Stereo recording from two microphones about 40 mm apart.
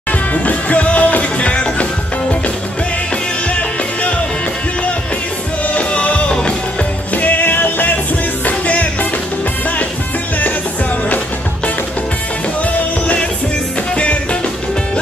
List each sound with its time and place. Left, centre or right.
0.1 s music: left
5.8 s music: left
7.2 s music: left
8.5 s music: left
13.0 s music: left